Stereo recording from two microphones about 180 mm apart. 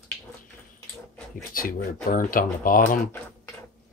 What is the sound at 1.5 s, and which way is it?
Speech, 50° left (ahead or behind).